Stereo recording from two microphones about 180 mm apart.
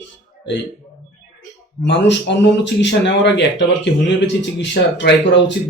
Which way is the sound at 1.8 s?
75° left (ahead or behind).